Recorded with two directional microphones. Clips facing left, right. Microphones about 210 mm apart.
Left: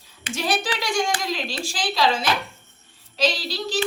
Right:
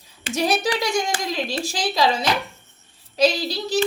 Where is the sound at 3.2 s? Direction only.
40° right (ahead or behind).